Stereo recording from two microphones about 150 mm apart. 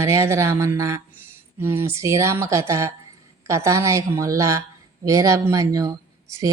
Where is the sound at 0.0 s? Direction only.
20° right (ahead or behind).